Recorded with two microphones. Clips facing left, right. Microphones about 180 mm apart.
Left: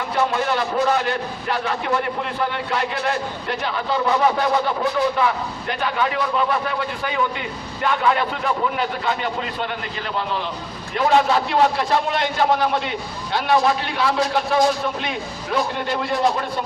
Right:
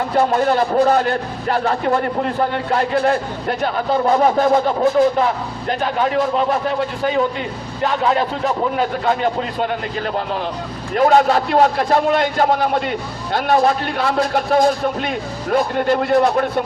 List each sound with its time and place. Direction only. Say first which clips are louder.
0.3 s speech: right 6 dB; 40° right (ahead or behind)
10.9 s speech: right 4 dB; 45° right (ahead or behind)